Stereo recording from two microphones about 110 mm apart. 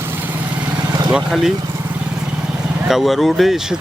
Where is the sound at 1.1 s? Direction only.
5° right (ahead or behind).